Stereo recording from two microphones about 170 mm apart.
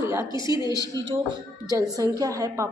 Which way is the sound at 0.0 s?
15° right (ahead or behind).